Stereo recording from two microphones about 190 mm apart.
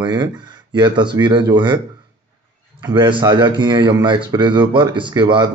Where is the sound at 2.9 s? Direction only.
25° right (ahead or behind).